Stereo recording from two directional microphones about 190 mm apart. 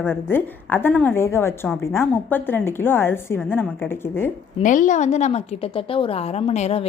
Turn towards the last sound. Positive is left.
turn(degrees=35)  # may be behind; listen again after turning